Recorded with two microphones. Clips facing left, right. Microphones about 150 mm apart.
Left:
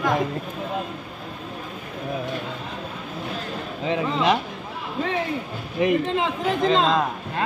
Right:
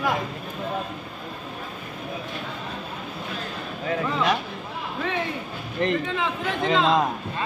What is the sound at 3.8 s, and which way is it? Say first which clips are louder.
Speech: left 2 dB; 20° left (ahead or behind).